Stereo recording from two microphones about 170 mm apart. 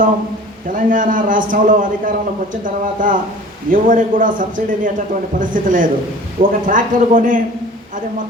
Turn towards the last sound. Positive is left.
turn(degrees=-50)  # may be behind; listen again after turning